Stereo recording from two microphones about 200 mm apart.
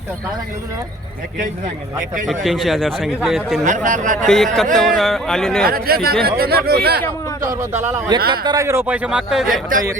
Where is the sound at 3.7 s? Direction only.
40° right (ahead or behind).